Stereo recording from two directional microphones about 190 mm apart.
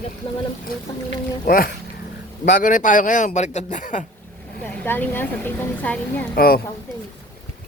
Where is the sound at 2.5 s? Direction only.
45° left (ahead or behind).